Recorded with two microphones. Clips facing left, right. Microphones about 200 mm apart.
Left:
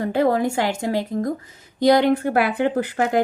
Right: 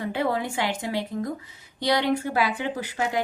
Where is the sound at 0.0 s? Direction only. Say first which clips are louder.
Left 7 dB; 45° left (ahead or behind).